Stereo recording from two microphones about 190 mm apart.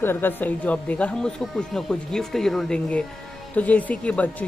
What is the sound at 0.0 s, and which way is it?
Speech, 10° left (ahead or behind).